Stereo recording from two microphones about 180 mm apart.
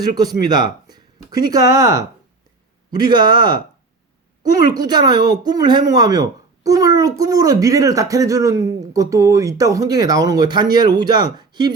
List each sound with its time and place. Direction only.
0.0 s speech: 20° right (ahead or behind)